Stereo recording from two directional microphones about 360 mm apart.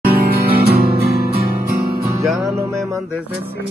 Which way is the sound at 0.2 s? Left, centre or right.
Right.